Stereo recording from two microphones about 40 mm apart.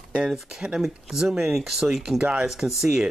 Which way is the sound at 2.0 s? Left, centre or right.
Right.